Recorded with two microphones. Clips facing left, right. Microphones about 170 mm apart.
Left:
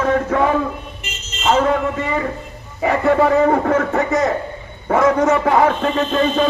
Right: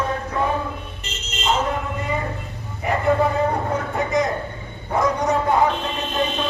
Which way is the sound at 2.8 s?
85° left.